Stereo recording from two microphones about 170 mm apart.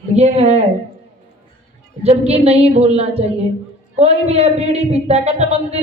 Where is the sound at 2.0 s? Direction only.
35° right (ahead or behind).